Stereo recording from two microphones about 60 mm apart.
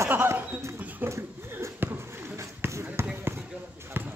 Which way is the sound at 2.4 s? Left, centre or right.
Right.